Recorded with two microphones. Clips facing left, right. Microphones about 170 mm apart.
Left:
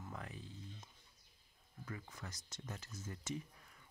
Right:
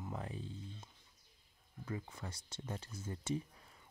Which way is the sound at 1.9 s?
30° right (ahead or behind).